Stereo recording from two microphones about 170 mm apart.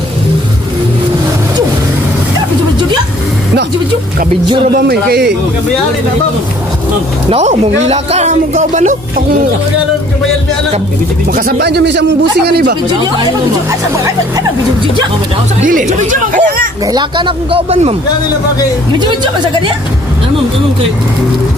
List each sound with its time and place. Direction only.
4.7 s speech: 65° right (ahead or behind)
7.2 s speech: 40° right (ahead or behind)
11.3 s speech: 70° right (ahead or behind)
15.6 s speech: 50° right (ahead or behind)
16.8 s speech: 25° right (ahead or behind)